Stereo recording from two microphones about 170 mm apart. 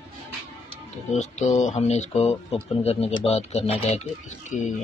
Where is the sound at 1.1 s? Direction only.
45° left (ahead or behind).